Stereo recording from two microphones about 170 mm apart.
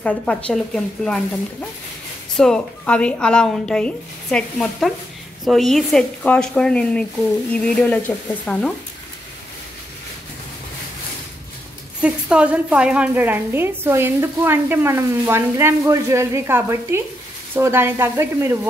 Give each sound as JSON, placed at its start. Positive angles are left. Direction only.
{"t": 0.0, "sound": "a woman's voice", "side_deg": 5}
{"t": 12.0, "sound": "a woman's voice", "side_deg": -5}